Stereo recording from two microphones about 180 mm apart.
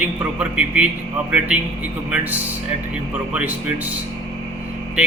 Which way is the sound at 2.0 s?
5° right (ahead or behind).